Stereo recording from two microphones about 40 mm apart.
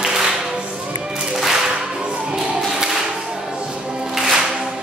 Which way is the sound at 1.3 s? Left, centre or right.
Centre.